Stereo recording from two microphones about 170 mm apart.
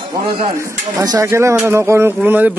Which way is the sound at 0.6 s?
20° right (ahead or behind).